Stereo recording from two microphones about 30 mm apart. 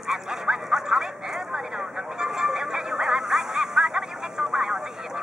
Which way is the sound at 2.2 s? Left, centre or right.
Centre.